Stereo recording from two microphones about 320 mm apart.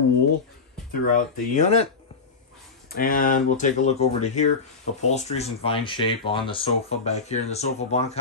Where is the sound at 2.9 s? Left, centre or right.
Left.